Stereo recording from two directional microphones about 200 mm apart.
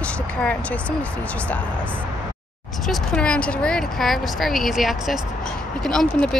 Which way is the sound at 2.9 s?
5° left (ahead or behind).